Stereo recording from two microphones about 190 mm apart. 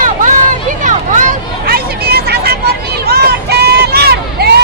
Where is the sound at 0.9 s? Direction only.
40° right (ahead or behind).